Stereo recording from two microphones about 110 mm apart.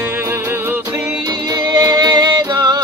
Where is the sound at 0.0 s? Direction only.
20° right (ahead or behind).